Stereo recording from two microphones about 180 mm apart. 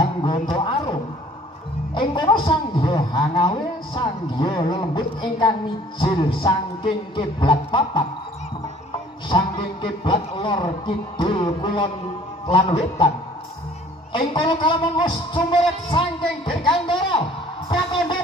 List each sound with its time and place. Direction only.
0.0 s a sound: 25° left (ahead or behind)
2.0 s a man's voice: 25° left (ahead or behind)
9.3 s a man's voice: 25° left (ahead or behind)
14.1 s a man's voice: 30° left (ahead or behind)